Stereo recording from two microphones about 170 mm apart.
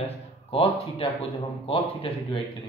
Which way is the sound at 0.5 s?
35° left (ahead or behind).